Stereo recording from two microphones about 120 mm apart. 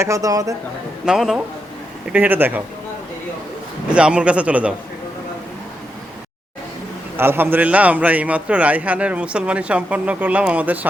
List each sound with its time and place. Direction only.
0.0 s speech: 25° right (ahead or behind)
1.0 s a man's voice: 5° right (ahead or behind)
3.9 s a man's voice: 10° right (ahead or behind)
7.2 s a man's voice: 20° right (ahead or behind)